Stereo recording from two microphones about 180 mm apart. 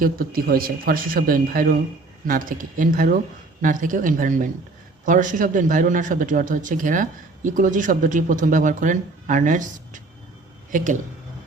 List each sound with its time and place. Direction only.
0.0 s speech: 55° right (ahead or behind)